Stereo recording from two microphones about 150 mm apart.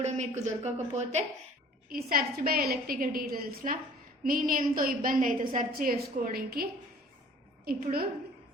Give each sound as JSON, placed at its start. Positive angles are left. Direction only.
{"t": 0.0, "sound": "a woman's voice", "side_deg": -50}
{"t": 1.9, "sound": "a woman's voice", "side_deg": -80}